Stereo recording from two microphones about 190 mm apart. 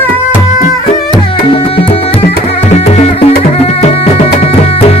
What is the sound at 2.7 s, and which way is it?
Music, 35° left (ahead or behind).